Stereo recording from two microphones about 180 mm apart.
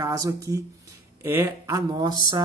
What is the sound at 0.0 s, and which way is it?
Speech, 20° right (ahead or behind).